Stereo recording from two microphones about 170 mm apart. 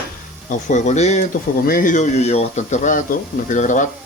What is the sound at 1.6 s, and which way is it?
Speech, 55° left (ahead or behind).